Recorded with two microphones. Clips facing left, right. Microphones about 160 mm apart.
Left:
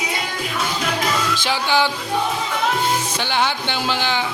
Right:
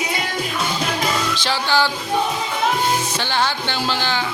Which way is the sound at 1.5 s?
15° left (ahead or behind).